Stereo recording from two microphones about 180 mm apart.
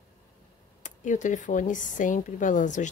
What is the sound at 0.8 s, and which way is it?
Speech, 45° left (ahead or behind).